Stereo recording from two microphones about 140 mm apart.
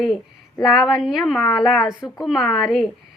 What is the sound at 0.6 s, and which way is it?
A woman's voice, centre (ahead or behind).